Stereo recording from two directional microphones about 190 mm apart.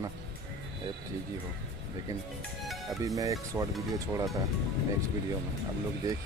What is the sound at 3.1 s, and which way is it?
Speech, 15° right (ahead or behind).